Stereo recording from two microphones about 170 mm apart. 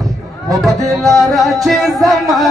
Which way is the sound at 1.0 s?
Centre (ahead or behind).